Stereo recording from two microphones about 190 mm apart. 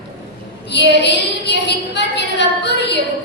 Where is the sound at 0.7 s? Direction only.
65° left (ahead or behind).